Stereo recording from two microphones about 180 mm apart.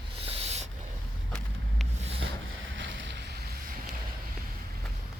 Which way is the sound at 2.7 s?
90° right.